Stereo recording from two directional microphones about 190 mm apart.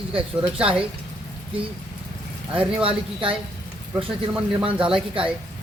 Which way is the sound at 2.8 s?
30° right (ahead or behind).